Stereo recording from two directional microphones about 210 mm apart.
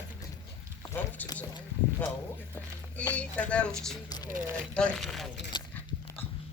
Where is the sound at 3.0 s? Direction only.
5° left (ahead or behind).